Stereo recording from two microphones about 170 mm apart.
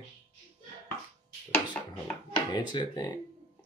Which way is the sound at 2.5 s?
25° left (ahead or behind).